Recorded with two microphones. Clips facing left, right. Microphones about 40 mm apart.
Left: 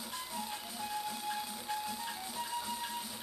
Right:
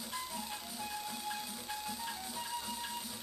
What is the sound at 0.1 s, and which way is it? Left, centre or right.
Music, centre.